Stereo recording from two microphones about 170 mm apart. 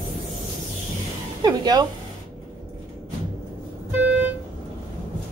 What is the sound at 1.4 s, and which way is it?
Music, 25° right (ahead or behind).